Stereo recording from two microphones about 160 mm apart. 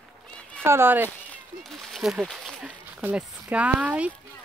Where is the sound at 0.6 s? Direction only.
15° right (ahead or behind).